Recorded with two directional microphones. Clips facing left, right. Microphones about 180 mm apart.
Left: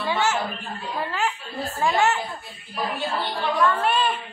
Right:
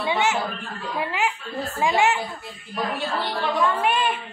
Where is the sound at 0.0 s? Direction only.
20° right (ahead or behind).